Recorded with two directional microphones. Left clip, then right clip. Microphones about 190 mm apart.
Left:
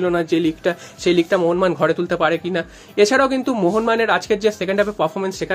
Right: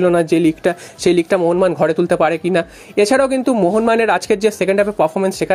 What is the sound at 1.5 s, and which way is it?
Speech, 25° right (ahead or behind).